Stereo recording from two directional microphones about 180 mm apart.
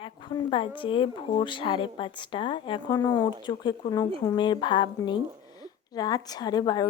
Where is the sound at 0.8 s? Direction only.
30° left (ahead or behind).